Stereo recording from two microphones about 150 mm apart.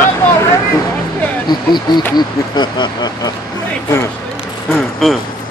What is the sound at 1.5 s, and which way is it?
Speech, 30° left (ahead or behind).